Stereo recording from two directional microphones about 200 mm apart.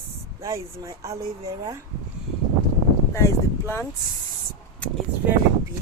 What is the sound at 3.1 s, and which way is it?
Speech, 15° left (ahead or behind).